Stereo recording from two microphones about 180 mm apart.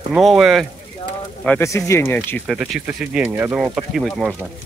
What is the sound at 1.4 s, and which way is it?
Speech, 10° left (ahead or behind).